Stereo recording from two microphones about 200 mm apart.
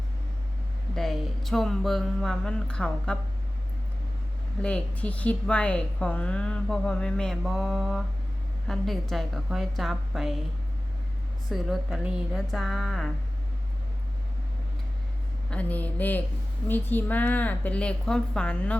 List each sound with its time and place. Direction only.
0.9 s a woman's voice: centre (ahead or behind)
4.6 s a woman's voice: 5° left (ahead or behind)
11.4 s a woman's voice: centre (ahead or behind)
15.4 s a woman's voice: 5° left (ahead or behind)